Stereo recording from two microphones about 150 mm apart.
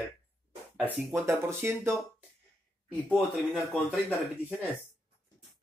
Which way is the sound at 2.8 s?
Centre (ahead or behind).